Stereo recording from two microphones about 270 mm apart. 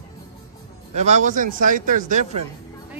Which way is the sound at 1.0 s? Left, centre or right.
Right.